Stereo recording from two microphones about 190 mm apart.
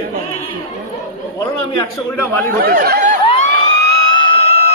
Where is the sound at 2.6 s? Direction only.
50° right (ahead or behind).